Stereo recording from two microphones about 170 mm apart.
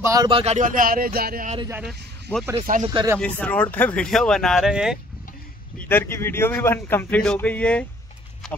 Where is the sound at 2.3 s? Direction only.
10° left (ahead or behind).